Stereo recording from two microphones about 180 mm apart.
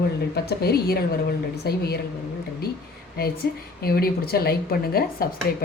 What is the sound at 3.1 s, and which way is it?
Speech, 60° left (ahead or behind).